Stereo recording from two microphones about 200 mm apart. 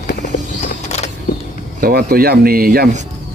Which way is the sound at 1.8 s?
50° right (ahead or behind).